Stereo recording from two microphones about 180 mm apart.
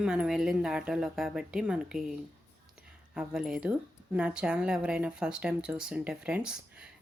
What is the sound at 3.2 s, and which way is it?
Speech, 5° right (ahead or behind).